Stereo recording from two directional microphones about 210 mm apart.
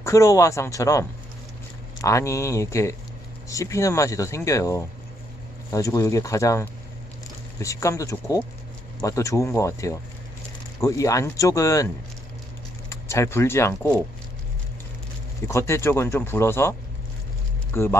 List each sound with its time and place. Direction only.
0.0 s speech: 15° left (ahead or behind)
12.9 s speech: 15° left (ahead or behind)
15.4 s speech: 15° left (ahead or behind)
17.7 s speech: 10° left (ahead or behind)